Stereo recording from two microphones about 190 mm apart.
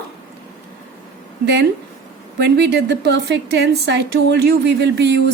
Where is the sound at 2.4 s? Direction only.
60° right (ahead or behind).